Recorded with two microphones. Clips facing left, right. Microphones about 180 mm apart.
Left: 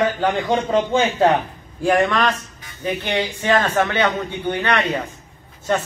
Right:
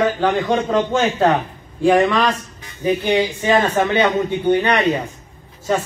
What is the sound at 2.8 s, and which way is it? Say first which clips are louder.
A man's voice: right 5 dB; 15° right (ahead or behind).